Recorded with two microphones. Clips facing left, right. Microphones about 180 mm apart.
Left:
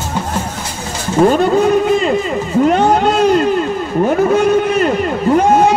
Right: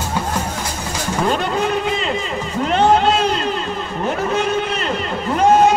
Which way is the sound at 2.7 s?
45° left (ahead or behind).